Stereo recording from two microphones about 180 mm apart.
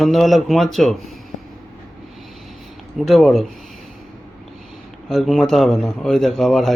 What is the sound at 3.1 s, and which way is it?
Speech, centre (ahead or behind).